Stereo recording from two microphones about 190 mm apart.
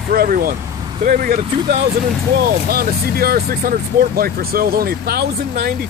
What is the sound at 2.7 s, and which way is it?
Speech, 50° right (ahead or behind).